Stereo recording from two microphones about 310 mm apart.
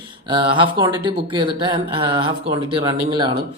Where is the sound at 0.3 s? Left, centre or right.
Centre.